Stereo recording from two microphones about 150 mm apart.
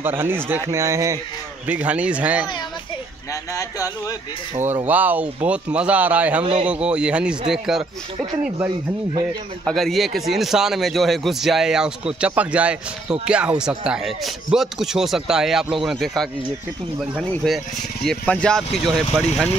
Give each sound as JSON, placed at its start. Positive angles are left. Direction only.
{"t": 0.0, "sound": "speech", "side_deg": -15}
{"t": 1.7, "sound": "speech", "side_deg": -10}
{"t": 3.5, "sound": "speech", "side_deg": 25}
{"t": 4.8, "sound": "speech", "side_deg": -10}
{"t": 6.4, "sound": "speech", "side_deg": -40}
{"t": 6.7, "sound": "speech", "side_deg": -5}
{"t": 8.5, "sound": "speech", "side_deg": -15}
{"t": 9.7, "sound": "a man's voice", "side_deg": 0}